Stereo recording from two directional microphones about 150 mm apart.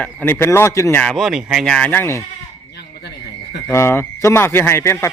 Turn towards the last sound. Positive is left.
turn(degrees=15)  # may be behind; listen again after turning